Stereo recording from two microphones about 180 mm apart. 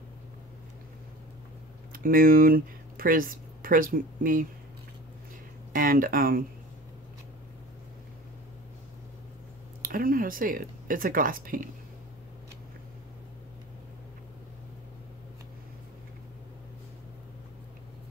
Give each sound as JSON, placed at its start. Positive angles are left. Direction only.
{"t": 1.9, "sound": "speech", "side_deg": -55}
{"t": 5.7, "sound": "speech", "side_deg": -50}
{"t": 9.8, "sound": "speech", "side_deg": -50}